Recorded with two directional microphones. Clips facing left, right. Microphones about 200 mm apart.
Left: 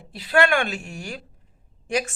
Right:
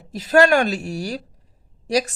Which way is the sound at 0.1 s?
45° right (ahead or behind).